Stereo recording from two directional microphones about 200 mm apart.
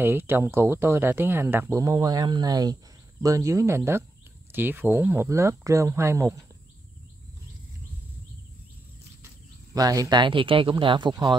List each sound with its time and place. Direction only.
0.0 s speech: 10° right (ahead or behind)
9.8 s speech: 20° right (ahead or behind)